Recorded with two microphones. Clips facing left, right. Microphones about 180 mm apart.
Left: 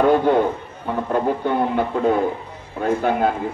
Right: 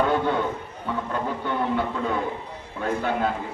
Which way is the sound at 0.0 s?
45° left (ahead or behind).